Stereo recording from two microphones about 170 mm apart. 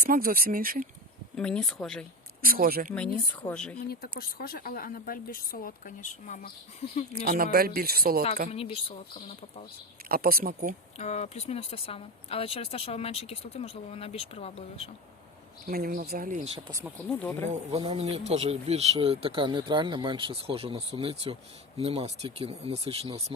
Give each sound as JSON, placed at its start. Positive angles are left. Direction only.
{"t": 0.0, "sound": "speech", "side_deg": -60}
{"t": 1.4, "sound": "speech", "side_deg": 5}
{"t": 2.4, "sound": "speech", "side_deg": -60}
{"t": 3.5, "sound": "speech", "side_deg": 5}
{"t": 4.2, "sound": "a woman's voice", "side_deg": 60}
{"t": 7.1, "sound": "speech", "side_deg": -60}
{"t": 8.5, "sound": "speech", "side_deg": 35}
{"t": 10.1, "sound": "speech", "side_deg": -60}
{"t": 10.9, "sound": "speech", "side_deg": 40}
{"t": 15.6, "sound": "speech", "side_deg": -60}
{"t": 16.6, "sound": "speech", "side_deg": -25}
{"t": 17.1, "sound": "speech", "side_deg": 10}
{"t": 17.5, "sound": "speech", "side_deg": -35}